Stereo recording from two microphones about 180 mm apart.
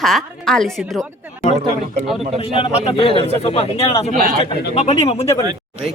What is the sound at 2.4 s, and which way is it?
A man's voice, 30° left (ahead or behind).